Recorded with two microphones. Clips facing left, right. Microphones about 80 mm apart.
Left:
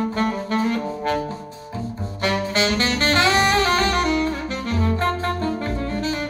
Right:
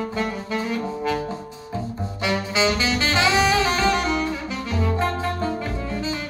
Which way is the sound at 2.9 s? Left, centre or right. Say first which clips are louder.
Left 4 dB; left.